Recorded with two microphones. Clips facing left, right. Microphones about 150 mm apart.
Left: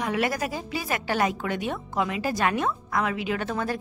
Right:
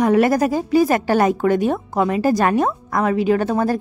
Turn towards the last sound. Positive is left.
turn(degrees=-40)  # may be behind; listen again after turning